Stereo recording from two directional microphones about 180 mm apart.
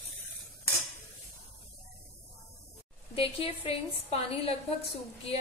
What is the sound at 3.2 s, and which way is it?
A woman's voice, 30° left (ahead or behind).